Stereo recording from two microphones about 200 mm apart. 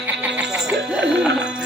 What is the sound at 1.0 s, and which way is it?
Music, 65° right (ahead or behind).